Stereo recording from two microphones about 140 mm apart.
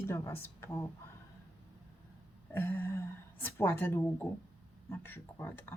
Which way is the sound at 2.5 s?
15° left (ahead or behind).